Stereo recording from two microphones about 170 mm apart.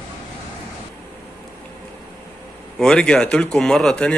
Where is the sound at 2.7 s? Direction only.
5° left (ahead or behind).